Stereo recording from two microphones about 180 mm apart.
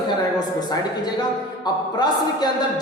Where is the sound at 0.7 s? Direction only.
20° left (ahead or behind).